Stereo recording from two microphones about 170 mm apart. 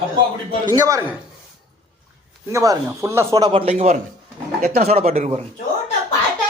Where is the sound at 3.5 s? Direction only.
35° right (ahead or behind).